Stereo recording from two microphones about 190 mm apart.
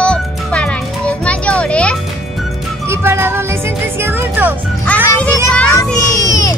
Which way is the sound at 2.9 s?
10° right (ahead or behind).